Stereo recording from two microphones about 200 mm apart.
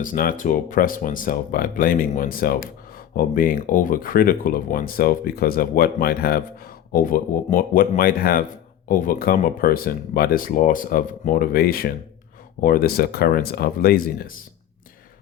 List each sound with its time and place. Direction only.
0.0 s speech: 45° left (ahead or behind)